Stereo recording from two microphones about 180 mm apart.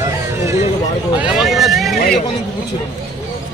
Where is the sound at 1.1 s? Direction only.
5° right (ahead or behind).